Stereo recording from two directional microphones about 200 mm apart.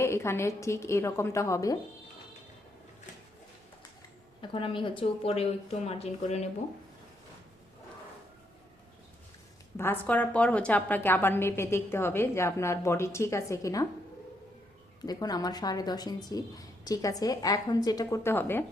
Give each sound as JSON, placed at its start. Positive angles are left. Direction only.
{"t": 0.0, "sound": "a woman's voice", "side_deg": 15}
{"t": 4.4, "sound": "a woman's voice", "side_deg": 25}
{"t": 9.7, "sound": "a woman's voice", "side_deg": 10}
{"t": 15.0, "sound": "a woman's voice", "side_deg": 20}